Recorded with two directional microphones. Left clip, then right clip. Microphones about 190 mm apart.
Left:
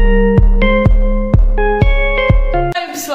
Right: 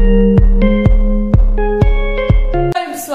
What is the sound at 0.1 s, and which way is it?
Music, centre (ahead or behind).